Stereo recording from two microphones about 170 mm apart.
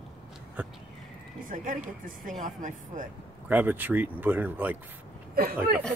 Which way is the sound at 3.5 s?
10° right (ahead or behind).